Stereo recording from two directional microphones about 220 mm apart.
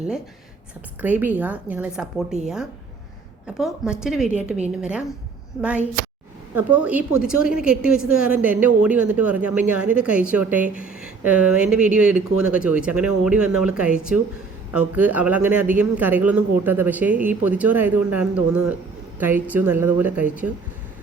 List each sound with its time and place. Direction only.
1.0 s a woman's voice: 5° right (ahead or behind)
3.4 s a woman's voice: 5° right (ahead or behind)
6.5 s a woman's voice: 10° right (ahead or behind)